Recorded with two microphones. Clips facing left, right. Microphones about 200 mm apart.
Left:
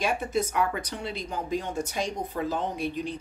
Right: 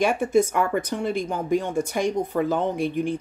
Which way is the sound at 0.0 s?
50° right (ahead or behind).